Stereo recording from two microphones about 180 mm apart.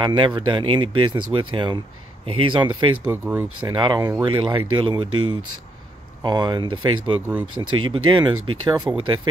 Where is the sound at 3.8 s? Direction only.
25° right (ahead or behind).